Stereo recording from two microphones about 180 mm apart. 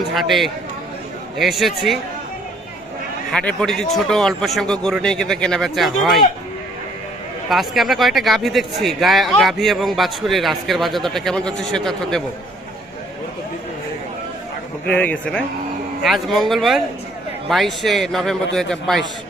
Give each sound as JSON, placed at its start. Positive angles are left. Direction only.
{"t": 0.1, "sound": "a man's voice", "side_deg": 0}
{"t": 3.3, "sound": "a man's voice", "side_deg": 5}
{"t": 7.5, "sound": "a man's voice", "side_deg": 0}
{"t": 14.8, "sound": "a man's voice", "side_deg": 5}